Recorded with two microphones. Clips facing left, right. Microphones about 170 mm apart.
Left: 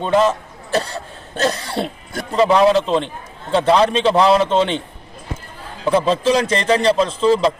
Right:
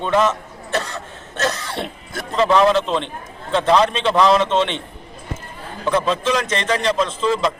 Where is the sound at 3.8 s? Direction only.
35° left (ahead or behind).